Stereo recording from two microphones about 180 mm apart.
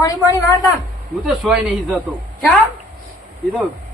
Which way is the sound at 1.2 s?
5° right (ahead or behind).